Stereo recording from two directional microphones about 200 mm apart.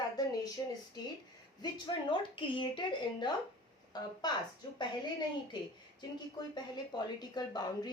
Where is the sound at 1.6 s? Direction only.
25° left (ahead or behind).